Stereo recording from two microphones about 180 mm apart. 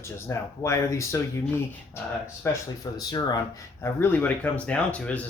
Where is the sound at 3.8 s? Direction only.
10° left (ahead or behind).